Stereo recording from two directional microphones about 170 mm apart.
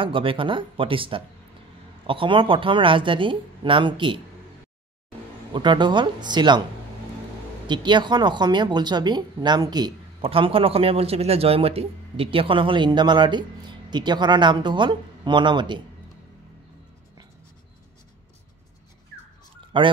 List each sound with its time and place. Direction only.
0.0 s a woman's voice: 30° right (ahead or behind)
5.5 s a woman's voice: 25° right (ahead or behind)
7.6 s a woman's voice: 25° right (ahead or behind)
19.7 s a woman's voice: 30° right (ahead or behind)